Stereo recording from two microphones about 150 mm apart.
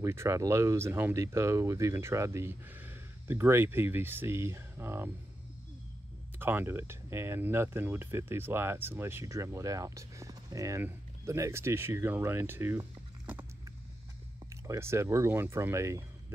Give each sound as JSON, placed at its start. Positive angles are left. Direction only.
{"t": 0.0, "sound": "speech", "side_deg": -20}
{"t": 6.4, "sound": "speech", "side_deg": -15}
{"t": 14.5, "sound": "speech", "side_deg": -20}